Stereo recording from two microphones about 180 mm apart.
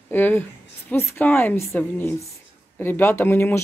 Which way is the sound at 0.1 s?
10° left (ahead or behind).